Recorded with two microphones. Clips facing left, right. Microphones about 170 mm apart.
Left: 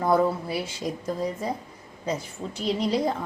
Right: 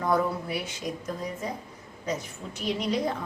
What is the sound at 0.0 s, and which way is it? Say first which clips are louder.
A woman's voice: left 4 dB; 30° left (ahead or behind).